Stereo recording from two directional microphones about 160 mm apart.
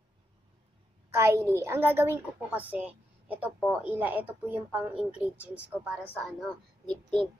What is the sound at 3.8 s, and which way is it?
A woman's voice, 10° right (ahead or behind).